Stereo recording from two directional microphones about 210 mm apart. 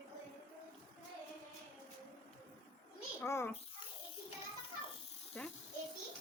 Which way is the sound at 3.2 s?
10° left (ahead or behind).